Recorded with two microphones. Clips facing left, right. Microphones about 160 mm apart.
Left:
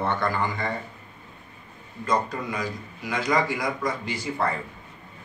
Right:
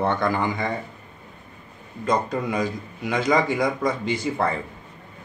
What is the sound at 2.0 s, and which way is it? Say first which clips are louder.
Speech: right 3 dB; 20° right (ahead or behind).